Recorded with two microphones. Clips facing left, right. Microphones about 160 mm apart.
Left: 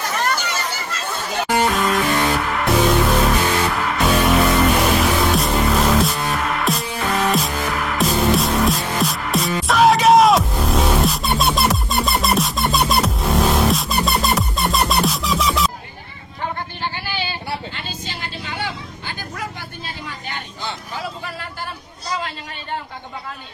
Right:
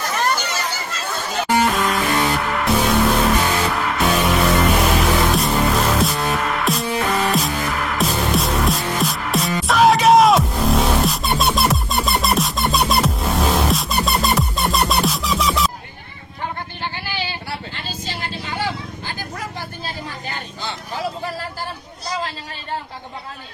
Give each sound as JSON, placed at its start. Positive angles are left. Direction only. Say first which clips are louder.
{"t": 1.7, "sound": "music", "louder": "left 1 dB", "side_deg": 0}
{"t": 18.0, "sound": "vehicle", "louder": "right 2 dB", "side_deg": -40}